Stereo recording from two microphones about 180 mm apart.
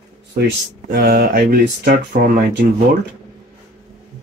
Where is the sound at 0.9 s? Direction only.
60° right (ahead or behind).